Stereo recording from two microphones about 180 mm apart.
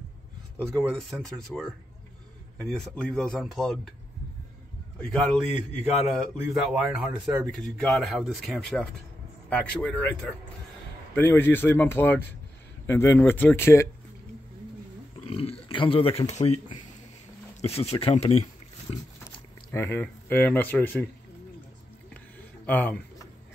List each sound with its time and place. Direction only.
0.6 s speech: 5° left (ahead or behind)
5.0 s speech: 5° left (ahead or behind)
15.1 s a sound: 35° left (ahead or behind)
17.6 s speech: 35° left (ahead or behind)
19.7 s speech: 15° left (ahead or behind)
22.7 s speech: 10° left (ahead or behind)